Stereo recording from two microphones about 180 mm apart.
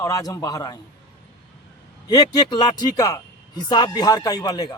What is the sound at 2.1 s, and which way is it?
A man's voice, 20° left (ahead or behind).